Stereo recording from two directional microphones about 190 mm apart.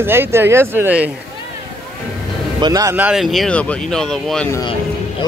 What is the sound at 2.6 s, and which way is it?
Speech, 20° right (ahead or behind).